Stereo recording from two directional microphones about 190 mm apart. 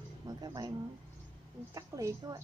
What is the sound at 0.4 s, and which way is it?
A woman's voice, 20° right (ahead or behind).